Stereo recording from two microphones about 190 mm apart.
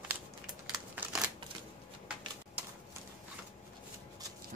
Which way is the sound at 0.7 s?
5° right (ahead or behind).